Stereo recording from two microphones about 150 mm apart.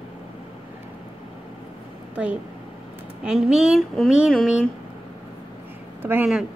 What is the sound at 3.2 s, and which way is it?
Speech, 5° right (ahead or behind).